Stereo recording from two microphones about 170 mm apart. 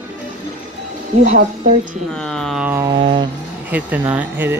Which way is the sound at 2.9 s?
30° right (ahead or behind).